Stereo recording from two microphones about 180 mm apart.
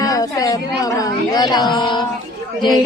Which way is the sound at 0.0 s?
20° left (ahead or behind).